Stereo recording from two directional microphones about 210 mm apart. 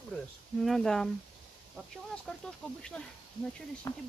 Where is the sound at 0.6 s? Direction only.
Centre (ahead or behind).